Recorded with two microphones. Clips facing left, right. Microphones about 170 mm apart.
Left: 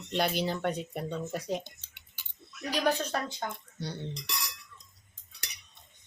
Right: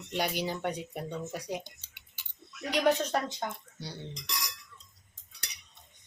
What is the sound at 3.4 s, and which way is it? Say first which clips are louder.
Speech: even; 5° right (ahead or behind).